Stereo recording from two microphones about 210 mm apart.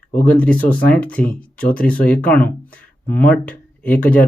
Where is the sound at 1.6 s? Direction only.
45° left (ahead or behind).